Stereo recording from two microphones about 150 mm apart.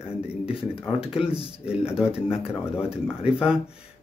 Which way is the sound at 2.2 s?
40° left (ahead or behind).